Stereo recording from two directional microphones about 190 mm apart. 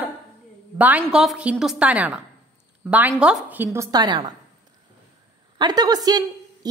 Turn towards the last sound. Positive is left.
turn(degrees=-20)  # may be behind; listen again after turning